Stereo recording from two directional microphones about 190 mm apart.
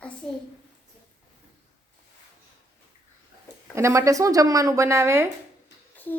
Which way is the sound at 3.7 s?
15° right (ahead or behind).